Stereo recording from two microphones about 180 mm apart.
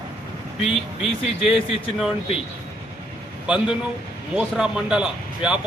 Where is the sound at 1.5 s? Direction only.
30° left (ahead or behind).